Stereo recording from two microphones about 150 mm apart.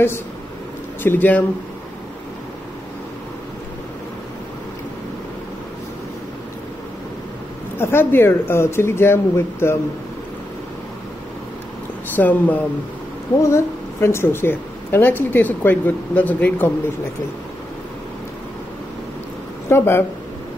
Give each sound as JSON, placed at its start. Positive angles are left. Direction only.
{"t": 1.0, "sound": "a woman's voice", "side_deg": 10}
{"t": 7.8, "sound": "a woman's voice", "side_deg": 15}
{"t": 12.2, "sound": "a woman's voice", "side_deg": 10}
{"t": 19.7, "sound": "a woman's voice", "side_deg": 15}